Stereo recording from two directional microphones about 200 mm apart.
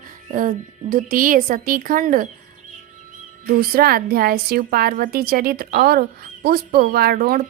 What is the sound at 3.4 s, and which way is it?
A woman's voice, 45° right (ahead or behind).